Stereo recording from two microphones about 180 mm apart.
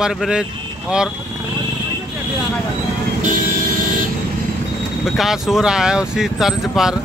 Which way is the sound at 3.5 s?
50° right (ahead or behind).